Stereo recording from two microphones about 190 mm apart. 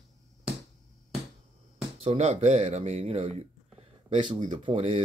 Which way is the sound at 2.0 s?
30° right (ahead or behind).